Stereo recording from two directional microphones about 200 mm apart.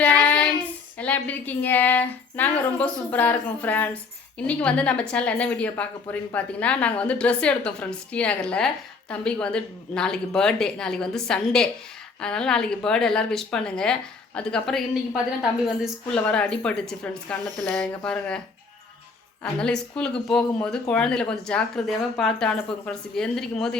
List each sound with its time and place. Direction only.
0.0 s child singing: 10° left (ahead or behind)
0.9 s a woman's voice: 5° left (ahead or behind)
19.4 s a woman's voice: 5° left (ahead or behind)